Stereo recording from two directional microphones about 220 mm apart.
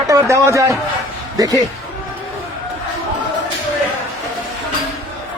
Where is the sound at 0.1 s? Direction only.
15° right (ahead or behind).